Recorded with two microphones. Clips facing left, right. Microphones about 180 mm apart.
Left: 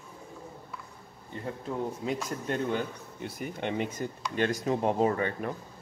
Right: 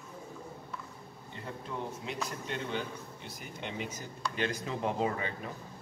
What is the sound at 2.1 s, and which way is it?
Speech, 45° left (ahead or behind).